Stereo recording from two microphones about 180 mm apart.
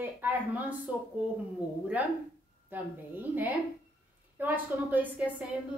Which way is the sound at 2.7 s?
10° right (ahead or behind).